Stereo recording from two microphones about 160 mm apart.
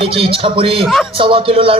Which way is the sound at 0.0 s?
35° right (ahead or behind).